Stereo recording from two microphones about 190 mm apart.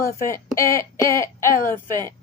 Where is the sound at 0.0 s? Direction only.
15° left (ahead or behind).